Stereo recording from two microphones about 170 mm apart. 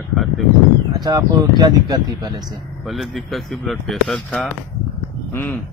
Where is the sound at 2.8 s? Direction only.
Centre (ahead or behind).